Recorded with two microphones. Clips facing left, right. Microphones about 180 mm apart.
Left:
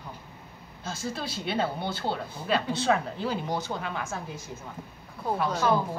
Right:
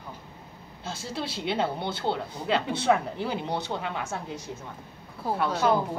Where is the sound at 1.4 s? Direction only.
20° right (ahead or behind).